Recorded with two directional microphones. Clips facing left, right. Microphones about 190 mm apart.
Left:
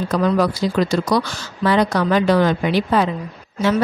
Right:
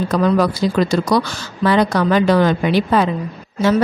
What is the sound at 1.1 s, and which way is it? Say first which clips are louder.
A woman's voice: right 2 dB; 90° right.